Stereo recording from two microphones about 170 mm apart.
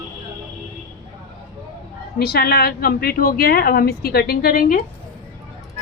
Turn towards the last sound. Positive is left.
turn(degrees=60)  # may be behind; listen again after turning